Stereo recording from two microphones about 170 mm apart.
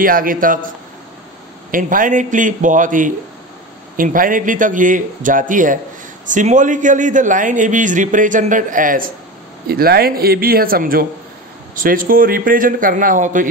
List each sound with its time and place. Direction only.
0.0 s a man's voice: 55° right (ahead or behind)
1.7 s a man's voice: 50° right (ahead or behind)